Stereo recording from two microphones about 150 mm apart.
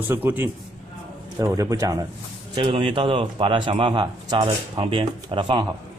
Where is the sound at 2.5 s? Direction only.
35° right (ahead or behind).